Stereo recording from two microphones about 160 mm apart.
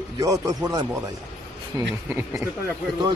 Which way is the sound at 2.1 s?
15° right (ahead or behind).